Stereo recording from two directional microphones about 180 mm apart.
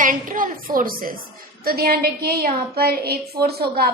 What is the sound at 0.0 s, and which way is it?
A woman's voice, 50° right (ahead or behind).